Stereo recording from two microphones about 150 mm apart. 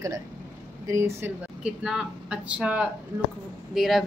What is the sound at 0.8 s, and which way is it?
Speech, 20° right (ahead or behind).